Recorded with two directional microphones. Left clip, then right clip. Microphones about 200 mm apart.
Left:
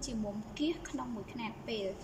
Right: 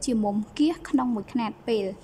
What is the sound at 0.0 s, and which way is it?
A woman's voice, 30° right (ahead or behind).